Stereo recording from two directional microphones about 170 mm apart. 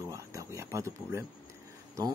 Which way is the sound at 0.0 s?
20° right (ahead or behind).